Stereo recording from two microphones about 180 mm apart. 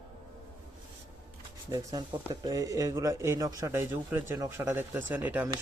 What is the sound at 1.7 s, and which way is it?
A man's voice, 20° right (ahead or behind).